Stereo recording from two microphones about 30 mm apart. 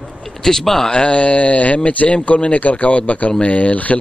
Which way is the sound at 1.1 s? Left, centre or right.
Left.